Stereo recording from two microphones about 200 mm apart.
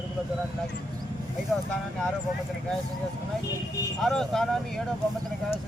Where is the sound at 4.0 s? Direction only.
Centre (ahead or behind).